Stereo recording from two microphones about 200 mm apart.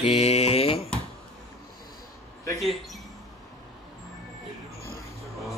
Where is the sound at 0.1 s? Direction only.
30° left (ahead or behind).